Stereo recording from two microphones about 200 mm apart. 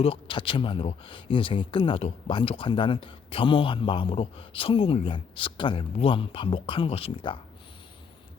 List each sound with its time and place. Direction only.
0.0 s speech: 25° left (ahead or behind)